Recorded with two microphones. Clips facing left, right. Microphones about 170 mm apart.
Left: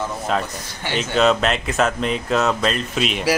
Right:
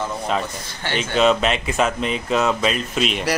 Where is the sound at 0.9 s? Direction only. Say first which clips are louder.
Even; centre (ahead or behind).